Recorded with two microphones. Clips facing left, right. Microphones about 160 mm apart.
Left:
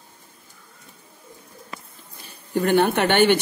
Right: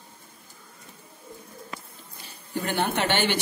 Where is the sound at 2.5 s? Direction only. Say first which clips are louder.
Left 8 dB; 60° left (ahead or behind).